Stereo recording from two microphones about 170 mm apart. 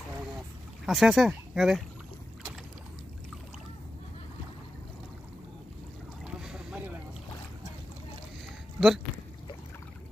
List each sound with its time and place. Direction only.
0.8 s speech: centre (ahead or behind)
6.2 s boat: 5° right (ahead or behind)
8.7 s a sound: centre (ahead or behind)